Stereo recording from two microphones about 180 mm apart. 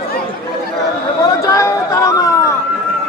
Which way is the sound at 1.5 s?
15° left (ahead or behind).